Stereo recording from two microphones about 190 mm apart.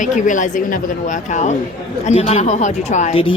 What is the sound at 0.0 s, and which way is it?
Speech, 40° left (ahead or behind).